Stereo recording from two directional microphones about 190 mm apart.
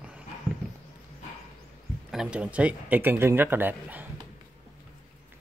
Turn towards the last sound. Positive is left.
turn(degrees=-10)  # may be behind; listen again after turning